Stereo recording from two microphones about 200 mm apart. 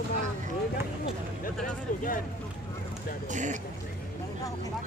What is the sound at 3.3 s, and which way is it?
Speech, 40° right (ahead or behind).